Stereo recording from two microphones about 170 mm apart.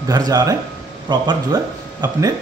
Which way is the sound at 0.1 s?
20° right (ahead or behind).